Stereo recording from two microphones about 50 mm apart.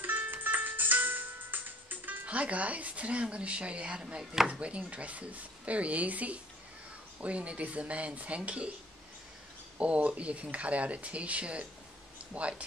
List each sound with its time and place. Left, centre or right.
0.0 s music: right; by 4.5 s centre
4.5 s speech: right
9.8 s speech: right